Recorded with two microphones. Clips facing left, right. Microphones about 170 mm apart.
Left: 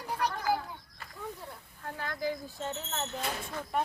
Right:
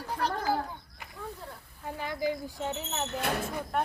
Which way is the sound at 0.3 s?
30° right (ahead or behind).